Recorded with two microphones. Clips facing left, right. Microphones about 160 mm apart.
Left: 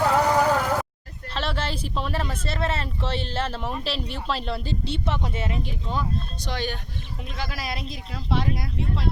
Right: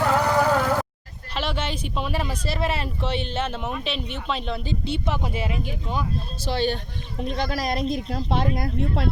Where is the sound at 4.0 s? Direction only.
35° left (ahead or behind).